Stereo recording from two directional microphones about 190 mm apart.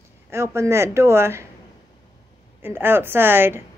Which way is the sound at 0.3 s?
15° right (ahead or behind).